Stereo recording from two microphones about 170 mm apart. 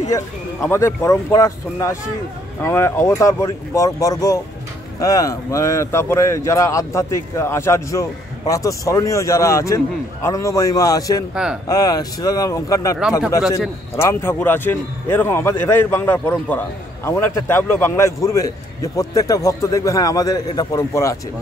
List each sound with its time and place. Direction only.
0.1 s a man's voice: 15° left (ahead or behind)
13.9 s a man's voice: 15° left (ahead or behind)